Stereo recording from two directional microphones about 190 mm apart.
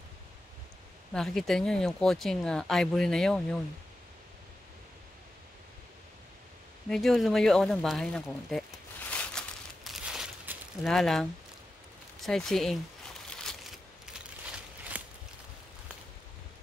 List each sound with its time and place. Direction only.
1.1 s speech: centre (ahead or behind)
6.9 s speech: centre (ahead or behind)
9.1 s crumpling: 5° left (ahead or behind)
10.9 s speech: centre (ahead or behind)
13.4 s a sound: centre (ahead or behind)
14.9 s a sound: 5° right (ahead or behind)